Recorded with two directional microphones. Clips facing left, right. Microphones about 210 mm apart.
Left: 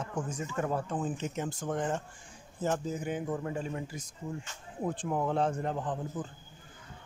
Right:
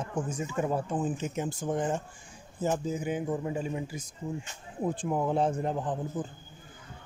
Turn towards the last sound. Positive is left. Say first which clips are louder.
# right 3 dB
turn(degrees=-15)  # may be behind; listen again after turning